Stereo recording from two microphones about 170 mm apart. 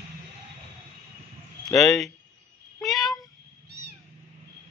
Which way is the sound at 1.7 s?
Centre (ahead or behind).